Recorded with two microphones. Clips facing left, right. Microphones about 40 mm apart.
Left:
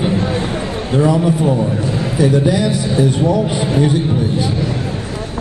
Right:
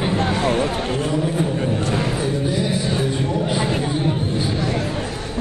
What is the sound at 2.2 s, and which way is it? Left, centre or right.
A man's voice, left.